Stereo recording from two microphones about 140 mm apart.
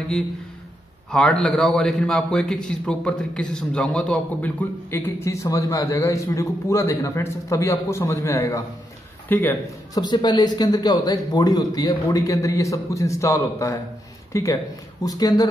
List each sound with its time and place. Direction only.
1.1 s a man's voice: 5° left (ahead or behind)
9.9 s a man's voice: 30° left (ahead or behind)